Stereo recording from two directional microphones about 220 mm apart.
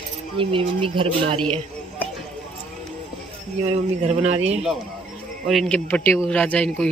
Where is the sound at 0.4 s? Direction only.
25° right (ahead or behind).